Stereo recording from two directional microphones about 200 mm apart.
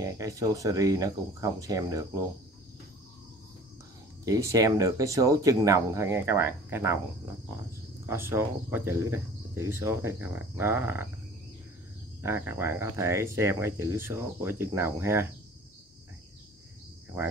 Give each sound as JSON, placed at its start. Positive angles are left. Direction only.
{"t": 0.0, "sound": "speech", "side_deg": -15}
{"t": 4.2, "sound": "speech", "side_deg": -15}
{"t": 8.1, "sound": "speech", "side_deg": -10}
{"t": 12.2, "sound": "speech", "side_deg": -10}